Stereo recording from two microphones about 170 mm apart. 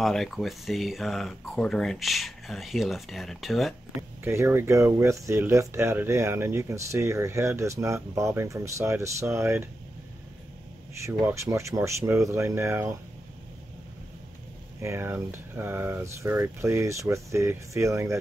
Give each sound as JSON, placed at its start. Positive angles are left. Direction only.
{"t": 0.0, "sound": "speech", "side_deg": 0}
{"t": 4.2, "sound": "speech", "side_deg": -15}
{"t": 11.0, "sound": "speech", "side_deg": -15}
{"t": 14.8, "sound": "speech", "side_deg": -15}